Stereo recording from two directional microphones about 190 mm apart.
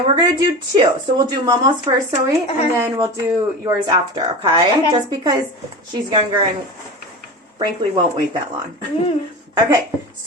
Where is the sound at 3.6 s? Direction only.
25° right (ahead or behind).